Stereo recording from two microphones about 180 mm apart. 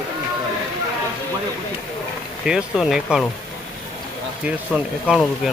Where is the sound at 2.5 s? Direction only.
5° right (ahead or behind).